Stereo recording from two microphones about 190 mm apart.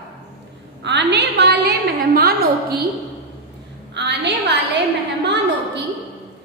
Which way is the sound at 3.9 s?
60° right (ahead or behind).